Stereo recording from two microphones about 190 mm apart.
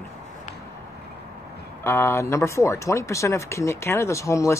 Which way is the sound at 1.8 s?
15° left (ahead or behind).